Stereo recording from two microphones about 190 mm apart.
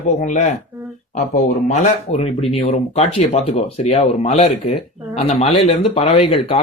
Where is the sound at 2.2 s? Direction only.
35° left (ahead or behind).